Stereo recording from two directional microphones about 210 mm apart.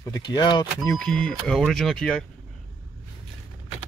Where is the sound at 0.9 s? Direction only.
5° left (ahead or behind).